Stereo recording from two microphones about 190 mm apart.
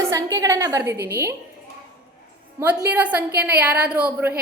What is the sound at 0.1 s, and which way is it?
Speech, 15° right (ahead or behind).